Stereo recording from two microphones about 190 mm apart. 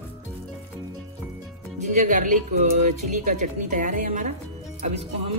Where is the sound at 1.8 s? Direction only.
40° right (ahead or behind).